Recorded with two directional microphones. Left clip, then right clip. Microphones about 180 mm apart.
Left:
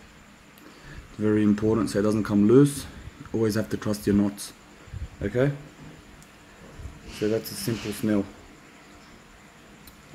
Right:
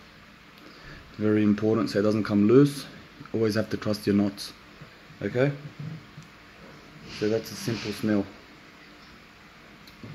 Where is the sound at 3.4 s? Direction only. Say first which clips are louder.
Right 1 dB; 35° left (ahead or behind).